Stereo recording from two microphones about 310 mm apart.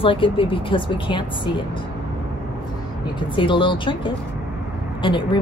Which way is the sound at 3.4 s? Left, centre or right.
Centre.